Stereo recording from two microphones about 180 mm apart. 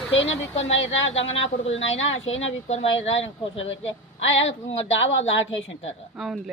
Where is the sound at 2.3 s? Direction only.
90° left.